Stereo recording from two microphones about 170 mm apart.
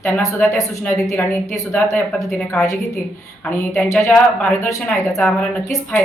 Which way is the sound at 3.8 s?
15° left (ahead or behind).